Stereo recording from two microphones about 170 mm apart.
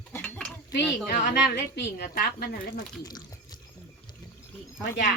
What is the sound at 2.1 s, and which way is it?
Speech, 55° left (ahead or behind).